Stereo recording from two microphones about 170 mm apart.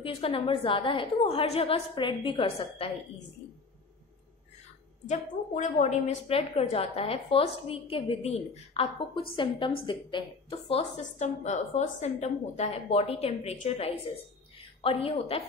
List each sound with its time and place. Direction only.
0.0 s a woman's voice: 35° left (ahead or behind)
5.0 s a woman's voice: 45° left (ahead or behind)